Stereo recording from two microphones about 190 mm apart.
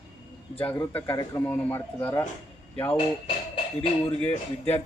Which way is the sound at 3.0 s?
30° left (ahead or behind).